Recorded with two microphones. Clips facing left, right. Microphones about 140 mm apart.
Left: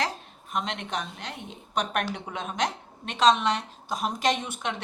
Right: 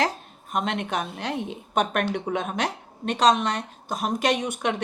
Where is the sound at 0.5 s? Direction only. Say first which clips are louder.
Right 4 dB; 50° right (ahead or behind).